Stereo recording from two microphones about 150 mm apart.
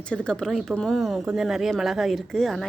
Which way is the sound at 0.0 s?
5° left (ahead or behind).